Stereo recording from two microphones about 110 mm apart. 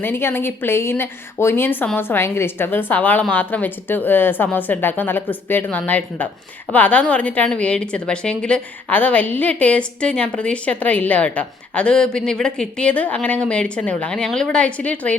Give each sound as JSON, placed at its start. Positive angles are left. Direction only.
{"t": 0.0, "sound": "a woman's voice", "side_deg": 20}